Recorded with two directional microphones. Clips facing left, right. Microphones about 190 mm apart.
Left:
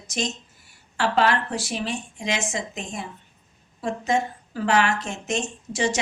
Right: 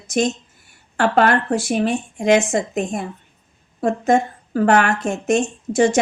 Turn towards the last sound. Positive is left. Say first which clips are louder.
# right 9 dB
turn(degrees=-50)  # may be behind; listen again after turning